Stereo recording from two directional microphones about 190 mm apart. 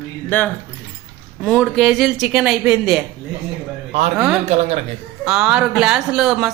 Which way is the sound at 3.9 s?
35° right (ahead or behind).